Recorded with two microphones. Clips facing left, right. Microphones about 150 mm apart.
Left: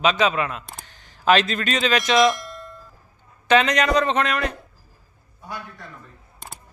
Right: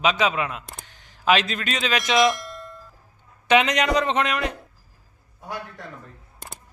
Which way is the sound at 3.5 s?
15° right (ahead or behind).